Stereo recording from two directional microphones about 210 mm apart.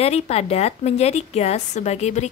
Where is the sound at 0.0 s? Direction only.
30° left (ahead or behind).